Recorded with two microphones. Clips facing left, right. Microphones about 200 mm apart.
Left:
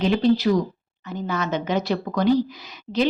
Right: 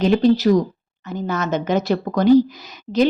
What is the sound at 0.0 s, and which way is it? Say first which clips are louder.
A woman's voice: right 4 dB; 45° right (ahead or behind).